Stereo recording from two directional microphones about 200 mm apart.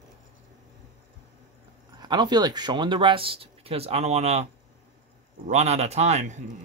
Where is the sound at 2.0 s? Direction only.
20° right (ahead or behind).